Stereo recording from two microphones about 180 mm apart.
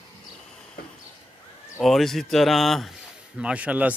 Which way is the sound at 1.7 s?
Centre (ahead or behind).